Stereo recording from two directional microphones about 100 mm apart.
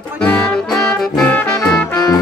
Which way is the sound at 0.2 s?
10° left (ahead or behind).